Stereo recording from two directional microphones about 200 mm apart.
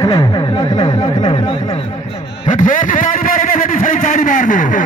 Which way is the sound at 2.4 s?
40° left (ahead or behind).